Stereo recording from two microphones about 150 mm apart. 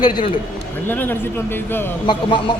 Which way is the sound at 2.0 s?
30° left (ahead or behind).